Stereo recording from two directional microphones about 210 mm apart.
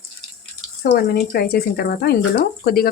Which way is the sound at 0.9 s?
45° left (ahead or behind).